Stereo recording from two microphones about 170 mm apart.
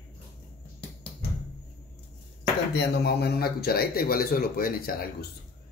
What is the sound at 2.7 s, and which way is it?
A man's voice, 70° left (ahead or behind).